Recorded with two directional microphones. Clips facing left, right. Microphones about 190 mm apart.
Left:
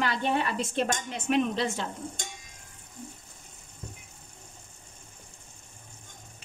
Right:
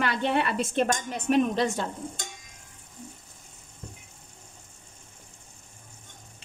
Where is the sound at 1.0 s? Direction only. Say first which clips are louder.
Right 3 dB; 45° right (ahead or behind).